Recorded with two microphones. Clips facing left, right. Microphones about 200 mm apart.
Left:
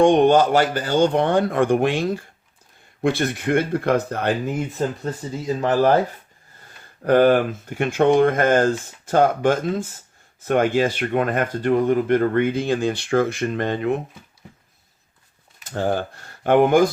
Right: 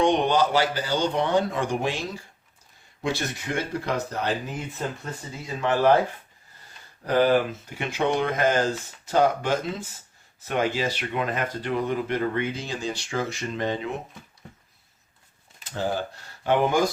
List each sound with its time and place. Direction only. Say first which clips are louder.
0.0 s speech: left 7 dB; 50° left (ahead or behind)
5.5 s speech: left 3 dB; 40° left (ahead or behind)
7.0 s speech: left 5 dB; 55° left (ahead or behind)
15.7 s speech: left 5 dB; 55° left (ahead or behind)